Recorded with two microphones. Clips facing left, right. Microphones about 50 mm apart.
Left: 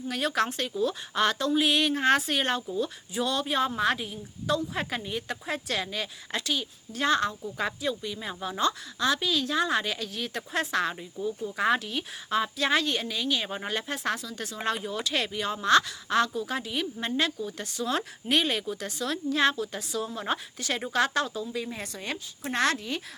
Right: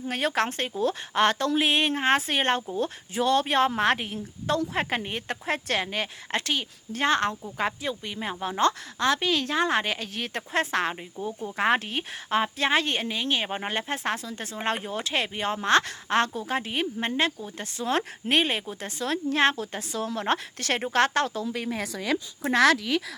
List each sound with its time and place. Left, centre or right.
0.1 s a woman's voice: right
3.4 s a woman's voice: right
20.1 s a woman's voice: right
21.5 s a woman's voice: right
22.5 s speech: right